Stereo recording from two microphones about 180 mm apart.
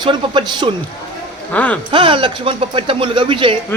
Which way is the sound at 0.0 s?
25° right (ahead or behind).